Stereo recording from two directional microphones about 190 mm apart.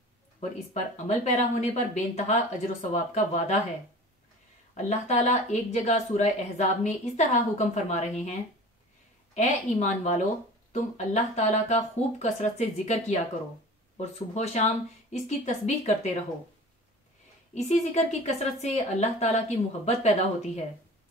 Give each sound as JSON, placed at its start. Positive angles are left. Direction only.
{"t": 0.4, "sound": "speech", "side_deg": 35}
{"t": 4.7, "sound": "speech", "side_deg": 35}
{"t": 17.6, "sound": "speech", "side_deg": 35}